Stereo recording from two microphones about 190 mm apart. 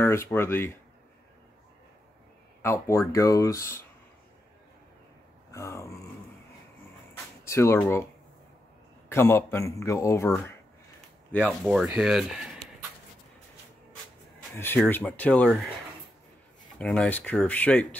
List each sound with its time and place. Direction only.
0.0 s speech: 10° left (ahead or behind)
2.6 s speech: 15° left (ahead or behind)
5.5 s grunt: 15° left (ahead or behind)
7.4 s speech: 15° left (ahead or behind)
9.1 s speech: 15° left (ahead or behind)
11.4 s speech: 5° right (ahead or behind)
14.5 s speech: 10° left (ahead or behind)
16.7 s speech: 5° left (ahead or behind)